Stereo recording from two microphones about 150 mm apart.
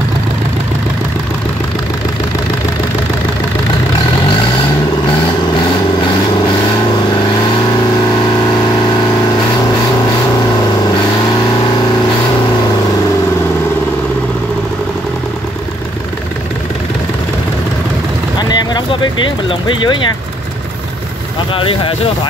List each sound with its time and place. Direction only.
18.5 s a sound: 30° left (ahead or behind)
19.7 s speech: 30° left (ahead or behind)
21.5 s speech: 35° left (ahead or behind)